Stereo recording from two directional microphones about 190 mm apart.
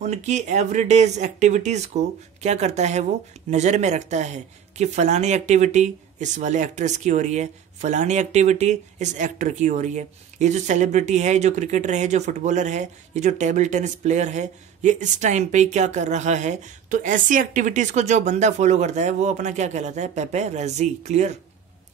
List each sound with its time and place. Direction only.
0.0 s speech: 35° right (ahead or behind)